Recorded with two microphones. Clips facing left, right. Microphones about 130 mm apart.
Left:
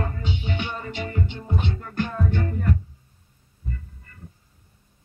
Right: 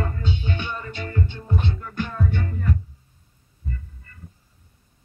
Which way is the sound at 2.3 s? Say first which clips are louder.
Left 2 dB; 40° left (ahead or behind).